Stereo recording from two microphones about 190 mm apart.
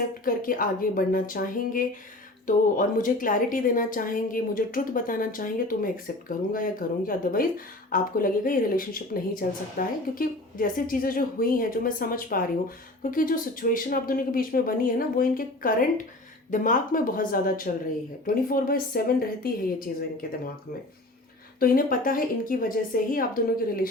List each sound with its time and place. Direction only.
0.3 s speech: 45° left (ahead or behind)
21.6 s speech: 50° left (ahead or behind)